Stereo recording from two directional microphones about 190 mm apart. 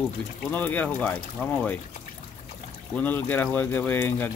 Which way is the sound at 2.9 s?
10° left (ahead or behind).